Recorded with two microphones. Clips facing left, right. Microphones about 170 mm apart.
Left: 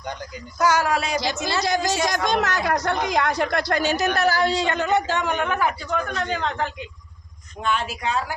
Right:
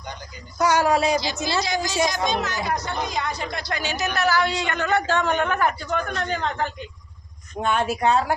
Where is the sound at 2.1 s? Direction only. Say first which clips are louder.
Left 2 dB; 80° left; by 3.8 s 60° left (ahead or behind).